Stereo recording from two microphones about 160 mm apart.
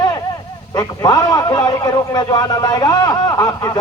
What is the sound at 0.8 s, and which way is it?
Speech, 25° left (ahead or behind).